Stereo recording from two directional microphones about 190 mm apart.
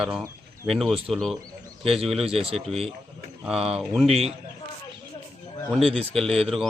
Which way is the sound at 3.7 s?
Centre (ahead or behind).